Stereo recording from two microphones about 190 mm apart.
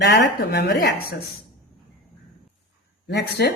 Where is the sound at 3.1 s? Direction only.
60° left (ahead or behind).